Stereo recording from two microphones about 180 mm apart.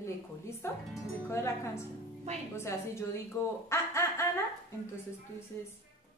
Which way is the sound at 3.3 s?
15° left (ahead or behind).